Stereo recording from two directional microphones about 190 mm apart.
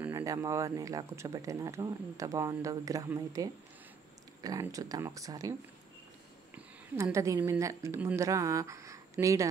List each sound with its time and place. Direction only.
0.0 s a woman's voice: 15° right (ahead or behind)